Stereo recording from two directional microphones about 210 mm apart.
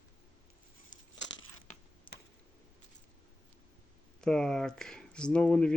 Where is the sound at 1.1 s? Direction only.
60° left (ahead or behind).